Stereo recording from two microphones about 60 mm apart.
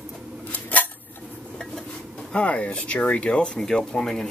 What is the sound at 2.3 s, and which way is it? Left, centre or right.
Speech, centre.